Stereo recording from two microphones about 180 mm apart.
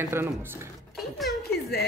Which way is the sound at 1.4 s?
60° left (ahead or behind).